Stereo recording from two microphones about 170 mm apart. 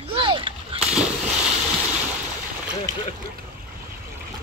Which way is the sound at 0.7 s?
5° right (ahead or behind).